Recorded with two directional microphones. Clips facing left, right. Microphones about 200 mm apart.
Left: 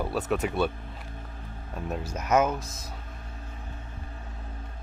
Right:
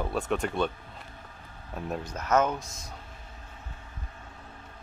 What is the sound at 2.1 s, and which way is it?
Speech, 10° left (ahead or behind).